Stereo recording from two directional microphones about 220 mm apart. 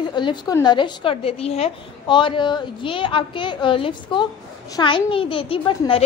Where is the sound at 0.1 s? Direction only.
20° left (ahead or behind).